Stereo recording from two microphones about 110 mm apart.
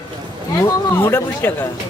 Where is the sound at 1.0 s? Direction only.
20° left (ahead or behind).